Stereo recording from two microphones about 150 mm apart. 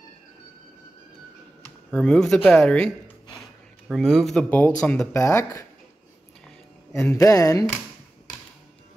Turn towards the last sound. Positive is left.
turn(degrees=20)  # may be behind; listen again after turning